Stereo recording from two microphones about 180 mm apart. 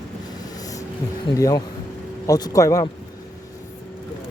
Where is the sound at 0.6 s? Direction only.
20° left (ahead or behind).